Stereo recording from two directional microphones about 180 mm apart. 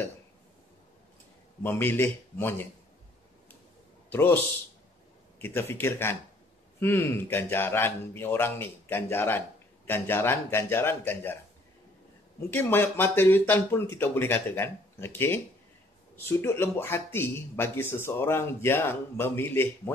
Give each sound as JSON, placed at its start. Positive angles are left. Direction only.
{"t": 1.6, "sound": "speech", "side_deg": 10}
{"t": 4.1, "sound": "speech", "side_deg": 10}
{"t": 5.4, "sound": "speech", "side_deg": 15}
{"t": 12.4, "sound": "speech", "side_deg": 10}